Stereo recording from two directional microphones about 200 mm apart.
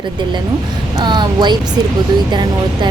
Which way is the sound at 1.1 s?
20° right (ahead or behind).